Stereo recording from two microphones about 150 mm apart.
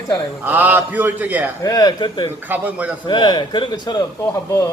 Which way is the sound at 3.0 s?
30° left (ahead or behind).